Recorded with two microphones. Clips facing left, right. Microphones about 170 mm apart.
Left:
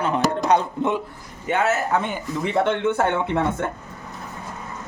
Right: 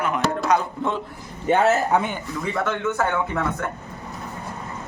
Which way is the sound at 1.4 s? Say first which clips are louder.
Right 4 dB; 35° right (ahead or behind).